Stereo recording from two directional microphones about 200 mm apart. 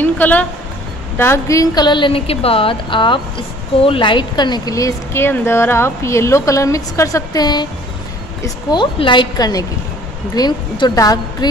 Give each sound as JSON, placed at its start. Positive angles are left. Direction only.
{"t": 0.0, "sound": "a woman's voice", "side_deg": 10}
{"t": 8.6, "sound": "speech", "side_deg": 25}